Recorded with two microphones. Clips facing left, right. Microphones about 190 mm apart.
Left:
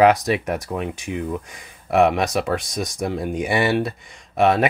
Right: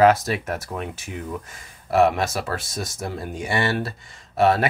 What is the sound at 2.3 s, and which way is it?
Speech, 15° left (ahead or behind).